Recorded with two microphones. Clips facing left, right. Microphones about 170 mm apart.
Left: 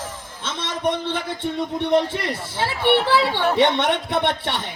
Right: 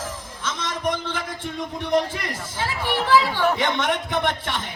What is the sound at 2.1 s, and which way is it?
Speech, 30° left (ahead or behind).